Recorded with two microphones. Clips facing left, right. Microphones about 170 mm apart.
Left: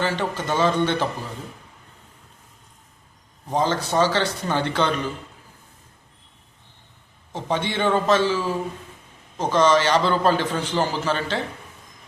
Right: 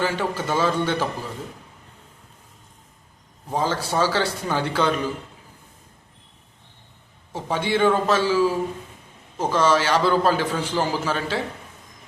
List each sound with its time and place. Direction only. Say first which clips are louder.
0.0 s a man's voice: even; 10° right (ahead or behind)
3.5 s a man's voice: left 2 dB; 5° right (ahead or behind)
7.3 s a man's voice: right 2 dB; 10° right (ahead or behind)